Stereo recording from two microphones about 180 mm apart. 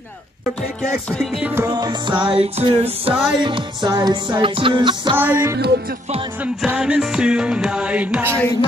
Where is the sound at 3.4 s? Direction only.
25° right (ahead or behind).